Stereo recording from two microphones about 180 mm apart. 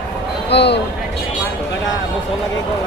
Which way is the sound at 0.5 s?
70° left (ahead or behind).